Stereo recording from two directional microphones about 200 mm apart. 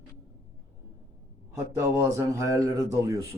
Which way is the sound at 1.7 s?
15° right (ahead or behind).